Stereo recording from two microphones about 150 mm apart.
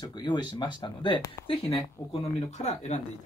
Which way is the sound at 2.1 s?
50° left (ahead or behind).